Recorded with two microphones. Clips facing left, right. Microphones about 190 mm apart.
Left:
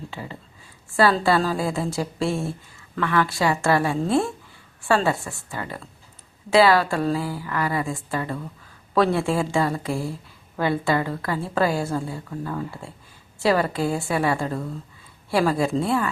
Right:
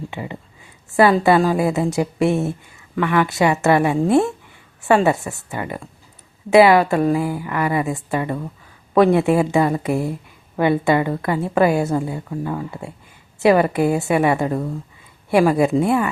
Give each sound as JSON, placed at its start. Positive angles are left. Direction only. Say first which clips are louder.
{"t": 0.1, "sound": "a woman's voice", "louder": "right 6 dB", "side_deg": -15}